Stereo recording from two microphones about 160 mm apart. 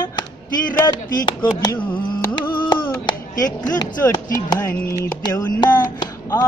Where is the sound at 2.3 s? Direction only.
30° left (ahead or behind).